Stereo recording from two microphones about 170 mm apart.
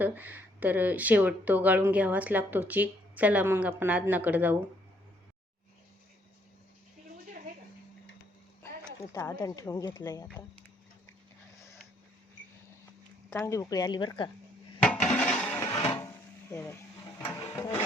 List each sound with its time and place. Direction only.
0.0 s speech: 10° right (ahead or behind)
9.1 s a woman's voice: 20° left (ahead or behind)
13.3 s a woman's voice: 15° left (ahead or behind)
14.8 s a sound: 5° left (ahead or behind)
16.5 s speech: 15° left (ahead or behind)
17.2 s printer: 15° left (ahead or behind)